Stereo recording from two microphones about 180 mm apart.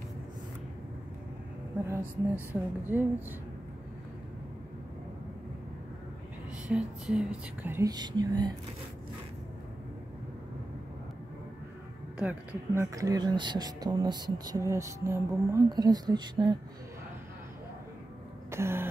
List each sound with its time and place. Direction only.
2.5 s whispering: 10° right (ahead or behind)
6.7 s whispering: 5° right (ahead or behind); by 8.5 s 25° right (ahead or behind)
12.2 s speech: 10° right (ahead or behind)
18.5 s a sound: 15° right (ahead or behind)